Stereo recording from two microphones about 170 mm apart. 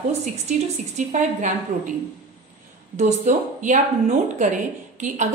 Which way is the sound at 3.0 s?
45° right (ahead or behind).